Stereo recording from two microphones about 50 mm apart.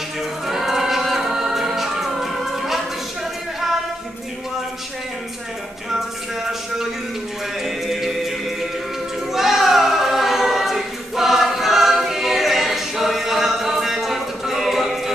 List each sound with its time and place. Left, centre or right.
0.5 s choir: centre
7.6 s music: centre
9.3 s choir: centre